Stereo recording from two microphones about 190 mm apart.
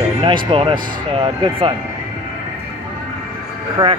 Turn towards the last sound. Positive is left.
turn(degrees=-15)  # may be behind; listen again after turning